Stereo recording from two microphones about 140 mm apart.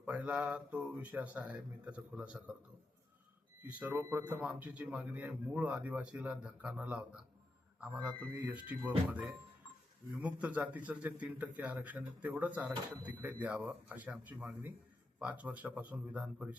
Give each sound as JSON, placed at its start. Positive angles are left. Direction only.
{"t": 0.0, "sound": "speech", "side_deg": -10}
{"t": 3.6, "sound": "speech", "side_deg": -10}
{"t": 8.3, "sound": "speech", "side_deg": -30}
{"t": 9.0, "sound": "speech", "side_deg": -10}